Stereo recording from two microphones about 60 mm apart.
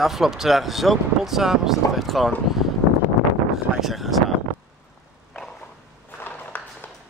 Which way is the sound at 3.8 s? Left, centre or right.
Centre.